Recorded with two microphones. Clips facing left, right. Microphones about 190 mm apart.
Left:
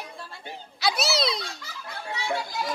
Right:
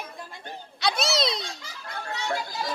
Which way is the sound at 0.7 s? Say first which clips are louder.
Even; centre (ahead or behind).